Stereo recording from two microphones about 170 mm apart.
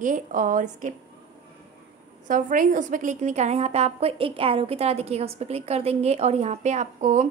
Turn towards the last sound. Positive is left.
turn(degrees=-45)  # may be behind; listen again after turning